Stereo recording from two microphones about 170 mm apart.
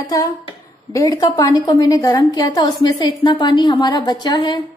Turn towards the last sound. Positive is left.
turn(degrees=25)  # may be behind; listen again after turning